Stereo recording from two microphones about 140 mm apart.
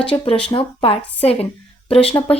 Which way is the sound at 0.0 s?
40° left (ahead or behind).